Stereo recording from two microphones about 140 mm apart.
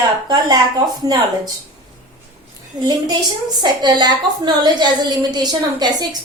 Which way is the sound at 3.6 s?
30° right (ahead or behind).